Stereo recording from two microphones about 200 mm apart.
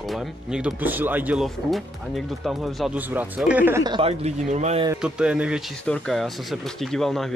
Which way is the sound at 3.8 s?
25° right (ahead or behind).